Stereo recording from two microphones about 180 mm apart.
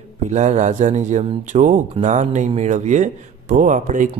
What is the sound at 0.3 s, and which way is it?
A man's voice, 40° right (ahead or behind).